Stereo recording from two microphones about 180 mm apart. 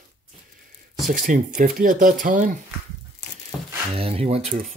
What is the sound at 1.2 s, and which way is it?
Speech, 45° right (ahead or behind).